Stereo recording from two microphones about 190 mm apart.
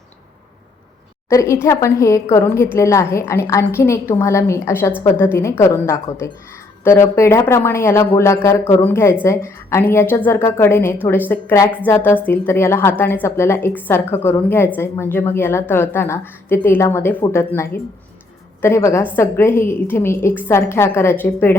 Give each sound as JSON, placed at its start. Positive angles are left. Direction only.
{"t": 1.3, "sound": "a woman's voice", "side_deg": 15}